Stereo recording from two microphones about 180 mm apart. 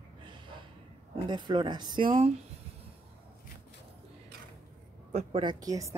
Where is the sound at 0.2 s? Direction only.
25° right (ahead or behind).